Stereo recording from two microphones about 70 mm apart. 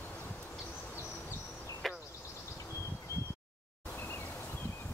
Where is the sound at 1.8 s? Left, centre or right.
Centre.